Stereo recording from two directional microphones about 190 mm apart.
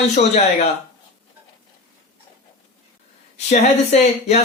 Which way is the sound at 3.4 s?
35° left (ahead or behind).